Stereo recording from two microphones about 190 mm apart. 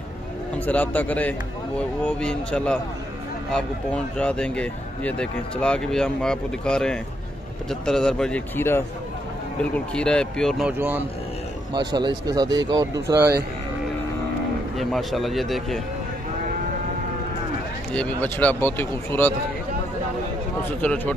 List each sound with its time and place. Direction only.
0.7 s speech: 10° left (ahead or behind)
9.9 s speech: 5° left (ahead or behind)
10.8 s a man's voice: 10° right (ahead or behind)
11.7 s speech: 20° right (ahead or behind)
14.8 s speech: centre (ahead or behind)
17.9 s speech: 10° left (ahead or behind)
20.8 s speech: 10° left (ahead or behind)